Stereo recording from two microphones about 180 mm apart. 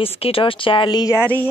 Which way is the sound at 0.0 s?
30° left (ahead or behind).